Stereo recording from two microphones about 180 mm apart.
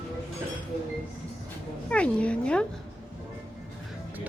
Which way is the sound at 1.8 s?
5° left (ahead or behind).